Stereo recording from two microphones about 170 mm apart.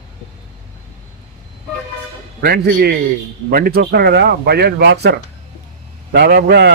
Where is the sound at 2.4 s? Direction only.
65° right (ahead or behind).